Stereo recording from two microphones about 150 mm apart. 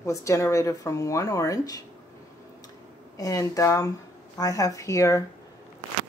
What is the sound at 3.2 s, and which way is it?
Speech, 20° left (ahead or behind).